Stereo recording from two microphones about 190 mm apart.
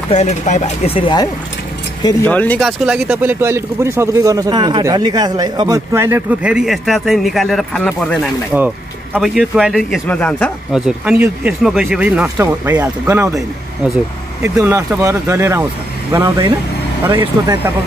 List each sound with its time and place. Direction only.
0.1 s speech: 35° left (ahead or behind)
2.2 s speech: 10° left (ahead or behind)
2.8 s speech: 5° right (ahead or behind)
8.5 s speech: 10° right (ahead or behind)
10.9 s speech: 5° right (ahead or behind)
14.4 s speech: 15° right (ahead or behind)